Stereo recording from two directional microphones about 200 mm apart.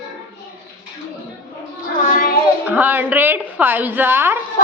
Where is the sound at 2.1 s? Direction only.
45° left (ahead or behind).